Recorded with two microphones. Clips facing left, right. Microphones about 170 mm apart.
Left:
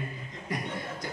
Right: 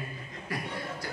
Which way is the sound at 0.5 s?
20° left (ahead or behind).